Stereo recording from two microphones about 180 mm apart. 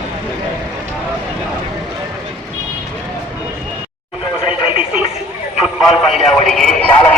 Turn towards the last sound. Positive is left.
turn(degrees=10)  # may be behind; listen again after turning